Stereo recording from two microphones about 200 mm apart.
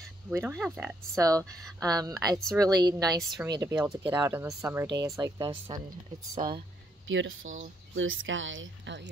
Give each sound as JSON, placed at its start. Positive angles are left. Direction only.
{"t": 0.4, "sound": "speech", "side_deg": 5}
{"t": 0.7, "sound": "speech", "side_deg": -10}
{"t": 1.4, "sound": "speech", "side_deg": 5}
{"t": 1.9, "sound": "a woman's voice", "side_deg": -20}
{"t": 2.3, "sound": "speech", "side_deg": 0}
{"t": 2.6, "sound": "a woman's voice", "side_deg": -20}
{"t": 3.7, "sound": "speech", "side_deg": -5}
{"t": 7.1, "sound": "speech", "side_deg": -70}